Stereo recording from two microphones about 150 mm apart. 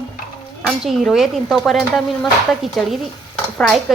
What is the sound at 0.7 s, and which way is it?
A woman's voice, centre (ahead or behind).